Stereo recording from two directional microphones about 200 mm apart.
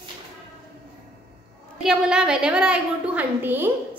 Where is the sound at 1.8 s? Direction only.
5° right (ahead or behind).